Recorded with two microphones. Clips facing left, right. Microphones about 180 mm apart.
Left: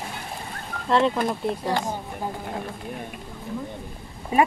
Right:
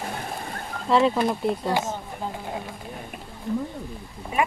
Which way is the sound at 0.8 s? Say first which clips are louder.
Right 1 dB; 5° right (ahead or behind).